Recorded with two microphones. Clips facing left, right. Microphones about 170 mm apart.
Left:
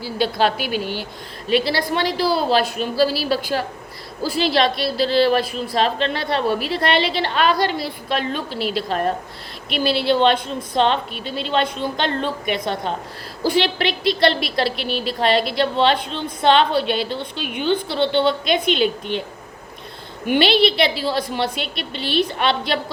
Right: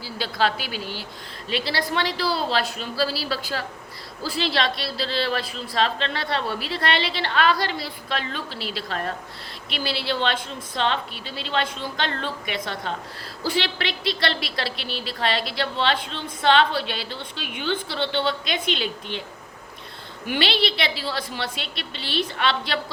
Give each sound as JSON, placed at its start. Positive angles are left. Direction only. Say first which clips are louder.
{"t": 0.0, "sound": "a woman's voice", "louder": "left 5 dB", "side_deg": 15}
{"t": 9.8, "sound": "speech", "louder": "left 9 dB", "side_deg": 55}
{"t": 10.1, "sound": "a woman's voice", "louder": "left 9 dB", "side_deg": 15}
{"t": 20.3, "sound": "a woman's voice", "louder": "left 8 dB", "side_deg": 15}